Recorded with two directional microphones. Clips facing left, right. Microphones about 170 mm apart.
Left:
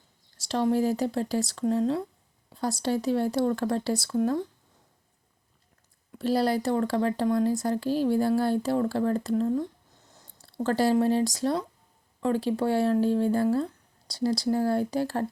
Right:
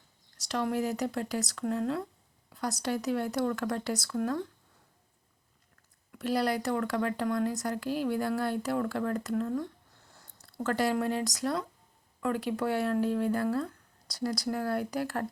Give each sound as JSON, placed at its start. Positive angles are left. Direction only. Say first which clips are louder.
{"t": 0.3, "sound": "speech", "louder": "left 6 dB", "side_deg": 30}
{"t": 6.1, "sound": "speech", "louder": "left 4 dB", "side_deg": 30}